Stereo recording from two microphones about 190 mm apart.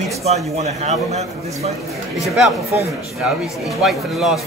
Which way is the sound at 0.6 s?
35° right (ahead or behind).